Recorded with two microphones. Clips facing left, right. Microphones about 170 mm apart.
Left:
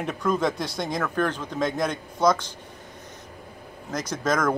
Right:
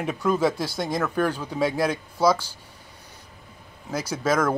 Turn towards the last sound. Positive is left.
turn(degrees=-5)  # may be behind; listen again after turning